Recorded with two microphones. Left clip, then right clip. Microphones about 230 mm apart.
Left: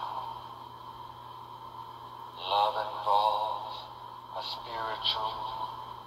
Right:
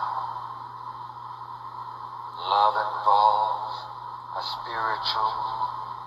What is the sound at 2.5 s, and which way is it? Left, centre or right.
Speech, right.